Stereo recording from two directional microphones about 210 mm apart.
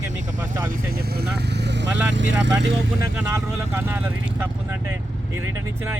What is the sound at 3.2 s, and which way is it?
Speech, 10° right (ahead or behind).